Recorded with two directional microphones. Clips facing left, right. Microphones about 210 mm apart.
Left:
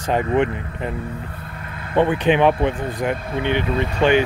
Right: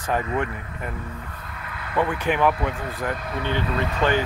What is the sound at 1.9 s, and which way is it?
Speech, 25° left (ahead or behind).